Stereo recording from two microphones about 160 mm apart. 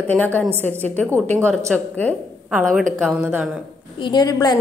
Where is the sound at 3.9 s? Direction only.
30° left (ahead or behind).